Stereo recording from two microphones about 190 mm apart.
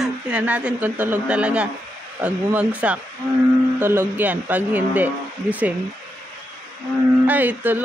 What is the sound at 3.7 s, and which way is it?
Speech, 10° right (ahead or behind).